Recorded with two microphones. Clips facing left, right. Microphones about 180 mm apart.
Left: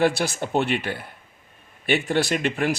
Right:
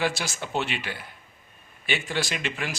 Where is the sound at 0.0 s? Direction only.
60° left (ahead or behind).